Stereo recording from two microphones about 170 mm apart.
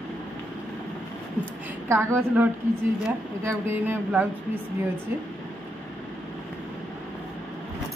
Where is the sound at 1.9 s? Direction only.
15° right (ahead or behind).